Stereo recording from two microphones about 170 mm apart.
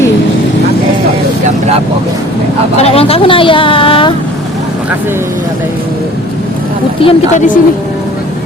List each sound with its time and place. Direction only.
2.8 s a sound: 35° left (ahead or behind)
7.0 s a woman's voice: 30° left (ahead or behind)
7.3 s a woman's voice: 50° left (ahead or behind)